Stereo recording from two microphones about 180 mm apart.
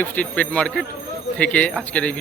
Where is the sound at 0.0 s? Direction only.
5° left (ahead or behind).